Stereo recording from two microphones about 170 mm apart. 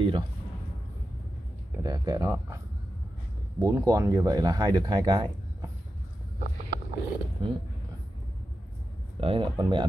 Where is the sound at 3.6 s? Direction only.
20° right (ahead or behind).